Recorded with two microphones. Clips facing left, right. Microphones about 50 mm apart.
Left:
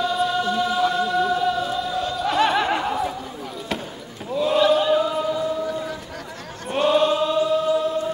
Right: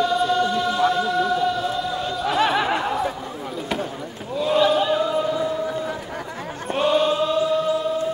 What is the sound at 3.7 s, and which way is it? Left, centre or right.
Run, centre.